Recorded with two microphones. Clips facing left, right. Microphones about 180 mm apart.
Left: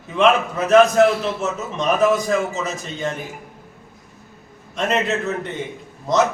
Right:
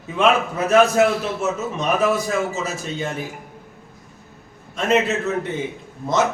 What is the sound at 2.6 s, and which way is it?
Speech, 5° right (ahead or behind).